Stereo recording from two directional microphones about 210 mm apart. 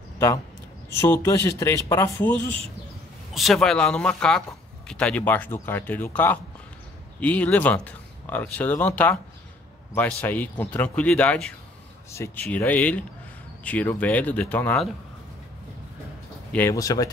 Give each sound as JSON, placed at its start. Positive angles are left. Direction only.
{"t": 0.8, "sound": "speech", "side_deg": 10}
{"t": 16.5, "sound": "speech", "side_deg": 15}